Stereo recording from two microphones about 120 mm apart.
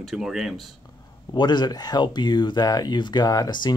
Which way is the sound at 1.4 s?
40° left (ahead or behind).